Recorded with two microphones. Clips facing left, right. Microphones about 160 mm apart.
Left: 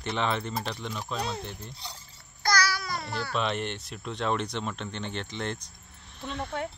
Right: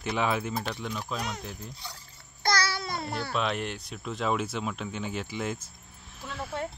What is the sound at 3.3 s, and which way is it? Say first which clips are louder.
Speech: left 1 dB; centre (ahead or behind).